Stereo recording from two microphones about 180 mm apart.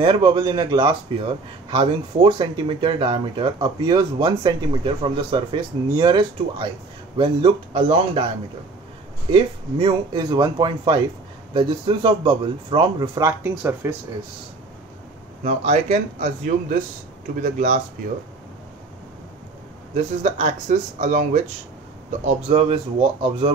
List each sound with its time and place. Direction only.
0.0 s speech: 25° right (ahead or behind)
9.3 s speech: 30° right (ahead or behind); by 13.9 s 15° right (ahead or behind)
15.4 s speech: 40° right (ahead or behind)
20.0 s speech: 40° right (ahead or behind)